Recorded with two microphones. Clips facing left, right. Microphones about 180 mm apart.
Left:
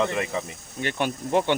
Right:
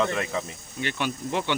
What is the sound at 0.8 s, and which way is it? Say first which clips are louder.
Speech: left 2 dB; 45° left (ahead or behind).